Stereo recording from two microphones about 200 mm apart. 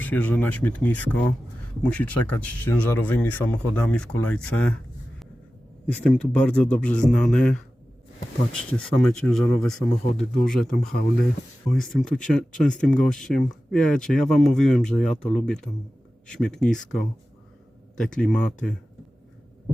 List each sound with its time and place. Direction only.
0.0 s speech: 10° left (ahead or behind)
5.8 s speech: 5° left (ahead or behind)
9.0 s speech: 5° left (ahead or behind)
10.7 s speech: 45° left (ahead or behind)
11.7 s speech: centre (ahead or behind)
17.9 s speech: 5° left (ahead or behind)